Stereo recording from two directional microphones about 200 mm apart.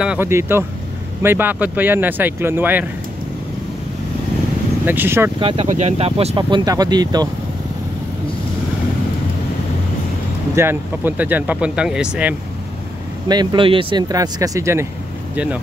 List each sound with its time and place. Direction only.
0.0 s speech: 10° right (ahead or behind)
4.8 s speech: 10° right (ahead or behind)
5.4 s speech: 25° right (ahead or behind)
10.5 s speech: 10° right (ahead or behind)
13.3 s speech: 20° right (ahead or behind)